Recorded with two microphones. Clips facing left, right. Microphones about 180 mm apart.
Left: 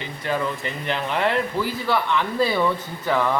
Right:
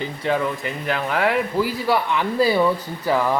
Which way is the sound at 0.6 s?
5° right (ahead or behind).